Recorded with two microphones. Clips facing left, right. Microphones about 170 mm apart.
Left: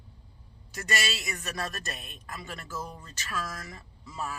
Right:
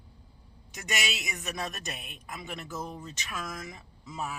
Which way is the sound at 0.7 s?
15° right (ahead or behind).